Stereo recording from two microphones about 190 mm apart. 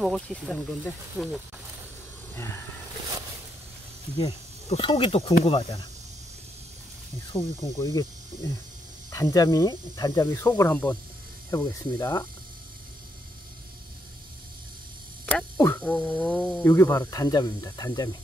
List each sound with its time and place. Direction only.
0.0 s speech: centre (ahead or behind)
4.6 s speech: 30° left (ahead or behind)
7.3 s speech: 15° left (ahead or behind)
15.2 s a sound: 10° left (ahead or behind)
16.6 s speech: 10° left (ahead or behind)